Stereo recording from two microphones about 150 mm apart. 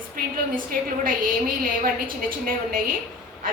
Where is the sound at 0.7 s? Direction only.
70° right (ahead or behind).